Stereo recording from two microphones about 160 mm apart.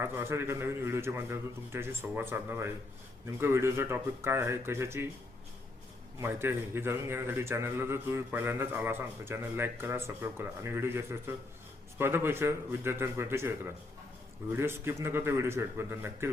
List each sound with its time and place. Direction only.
0.0 s a man's voice: 15° right (ahead or behind)
6.1 s a man's voice: 15° right (ahead or behind)